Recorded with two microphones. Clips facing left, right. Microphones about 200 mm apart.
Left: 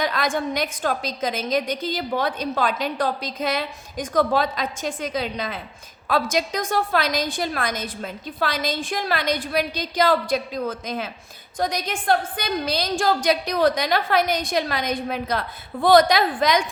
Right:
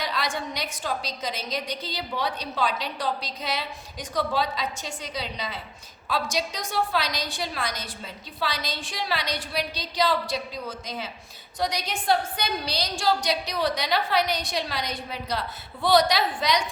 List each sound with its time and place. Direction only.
0.0 s a woman's voice: 50° left (ahead or behind)